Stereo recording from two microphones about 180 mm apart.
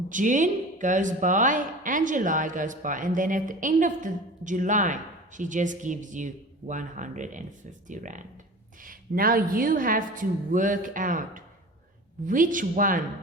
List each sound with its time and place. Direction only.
0.1 s a woman's voice: 45° right (ahead or behind)